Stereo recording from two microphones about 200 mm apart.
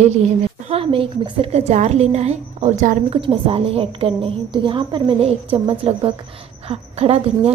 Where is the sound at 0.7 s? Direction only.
30° right (ahead or behind).